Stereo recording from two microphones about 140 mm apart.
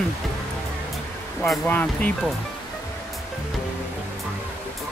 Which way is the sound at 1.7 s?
10° left (ahead or behind).